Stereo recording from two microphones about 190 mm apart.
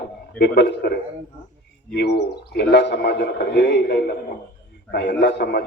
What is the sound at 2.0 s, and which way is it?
A man's voice, 60° left (ahead or behind).